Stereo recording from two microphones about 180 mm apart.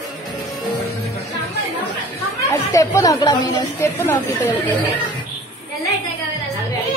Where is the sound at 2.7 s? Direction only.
20° left (ahead or behind).